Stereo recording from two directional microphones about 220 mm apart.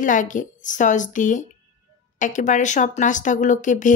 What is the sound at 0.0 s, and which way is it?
A woman's voice, 35° left (ahead or behind).